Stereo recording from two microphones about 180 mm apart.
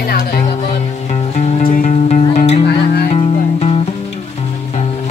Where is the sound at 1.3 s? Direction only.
35° left (ahead or behind).